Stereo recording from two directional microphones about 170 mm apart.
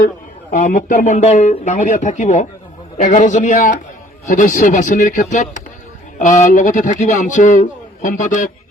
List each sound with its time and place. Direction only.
0.5 s speech: 50° left (ahead or behind)